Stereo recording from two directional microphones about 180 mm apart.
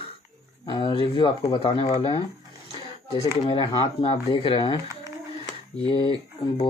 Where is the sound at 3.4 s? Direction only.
30° left (ahead or behind).